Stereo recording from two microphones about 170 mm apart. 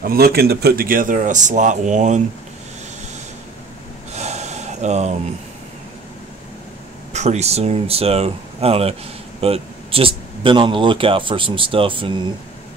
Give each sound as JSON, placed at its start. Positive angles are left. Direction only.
{"t": 0.0, "sound": "speech", "side_deg": -60}
{"t": 4.1, "sound": "gasp", "side_deg": -40}
{"t": 7.1, "sound": "speech", "side_deg": -40}